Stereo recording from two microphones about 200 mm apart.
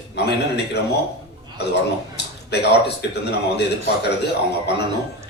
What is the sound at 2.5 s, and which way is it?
A man's voice, 55° left (ahead or behind).